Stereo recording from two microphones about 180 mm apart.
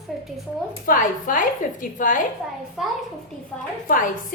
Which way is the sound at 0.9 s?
50° left (ahead or behind).